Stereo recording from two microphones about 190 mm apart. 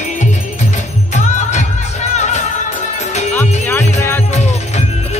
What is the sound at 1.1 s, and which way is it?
Music, 40° left (ahead or behind).